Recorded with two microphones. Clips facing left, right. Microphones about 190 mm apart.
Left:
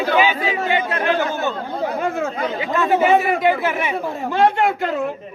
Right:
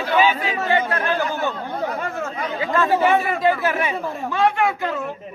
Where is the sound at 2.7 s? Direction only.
20° left (ahead or behind).